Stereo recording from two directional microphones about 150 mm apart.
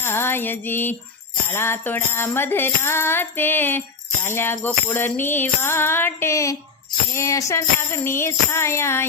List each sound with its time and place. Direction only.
0.0 s music: 15° left (ahead or behind)
1.5 s jingle bell: 15° left (ahead or behind)